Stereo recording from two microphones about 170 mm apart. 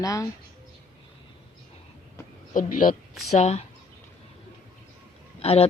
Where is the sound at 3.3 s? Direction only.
40° left (ahead or behind).